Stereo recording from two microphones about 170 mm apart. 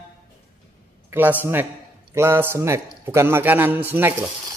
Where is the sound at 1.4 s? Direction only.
15° right (ahead or behind).